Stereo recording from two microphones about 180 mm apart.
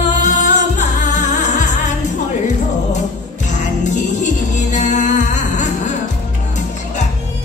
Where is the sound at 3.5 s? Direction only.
40° left (ahead or behind).